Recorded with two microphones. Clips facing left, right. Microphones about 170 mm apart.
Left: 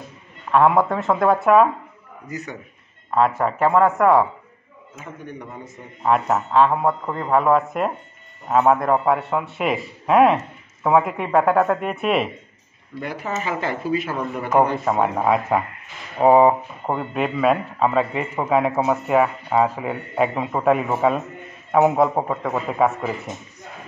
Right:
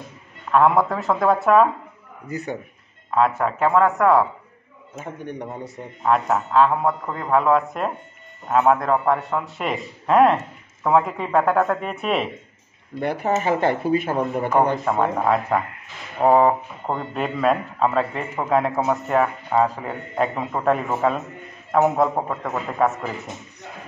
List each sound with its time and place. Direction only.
0.5 s speech: centre (ahead or behind)
3.1 s speech: centre (ahead or behind)
4.9 s a man's voice: 65° right (ahead or behind)
6.0 s speech: 5° left (ahead or behind)
13.0 s speech: 60° right (ahead or behind)
14.5 s a man's voice: 10° left (ahead or behind)